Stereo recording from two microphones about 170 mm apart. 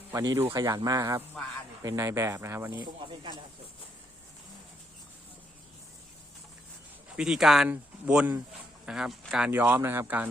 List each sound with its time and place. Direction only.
0.1 s speech: 15° right (ahead or behind)
3.1 s speech: 30° right (ahead or behind)
7.2 s speech: centre (ahead or behind)
9.5 s speech: 15° right (ahead or behind)